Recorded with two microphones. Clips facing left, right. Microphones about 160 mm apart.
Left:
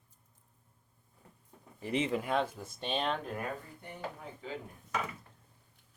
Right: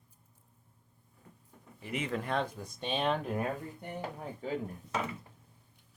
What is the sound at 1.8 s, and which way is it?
Speech, 30° left (ahead or behind).